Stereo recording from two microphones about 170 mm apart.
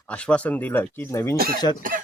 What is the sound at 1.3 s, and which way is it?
Speech, 60° right (ahead or behind).